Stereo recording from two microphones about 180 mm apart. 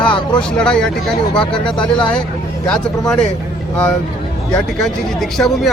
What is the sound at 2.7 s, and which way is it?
Speech, 5° left (ahead or behind).